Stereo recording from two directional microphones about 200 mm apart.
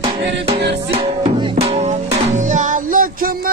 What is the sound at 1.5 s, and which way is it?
Music, 30° right (ahead or behind).